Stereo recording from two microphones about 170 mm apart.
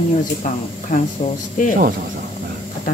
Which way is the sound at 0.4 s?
50° left (ahead or behind).